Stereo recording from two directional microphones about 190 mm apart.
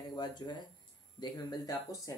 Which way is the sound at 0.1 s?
25° left (ahead or behind).